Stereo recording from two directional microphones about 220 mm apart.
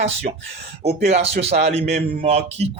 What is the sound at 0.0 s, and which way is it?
A man's voice, 30° right (ahead or behind).